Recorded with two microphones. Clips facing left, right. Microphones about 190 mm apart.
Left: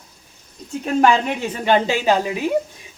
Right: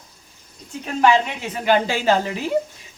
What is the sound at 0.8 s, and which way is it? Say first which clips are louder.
Speech: left 1 dB; 45° left (ahead or behind).